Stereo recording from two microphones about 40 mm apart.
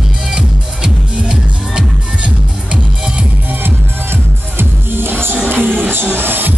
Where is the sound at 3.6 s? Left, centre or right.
Right.